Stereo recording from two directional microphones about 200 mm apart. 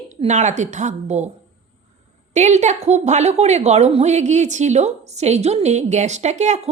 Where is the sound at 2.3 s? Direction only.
35° right (ahead or behind).